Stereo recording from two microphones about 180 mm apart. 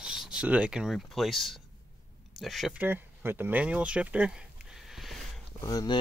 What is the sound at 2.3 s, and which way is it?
Speech, centre (ahead or behind).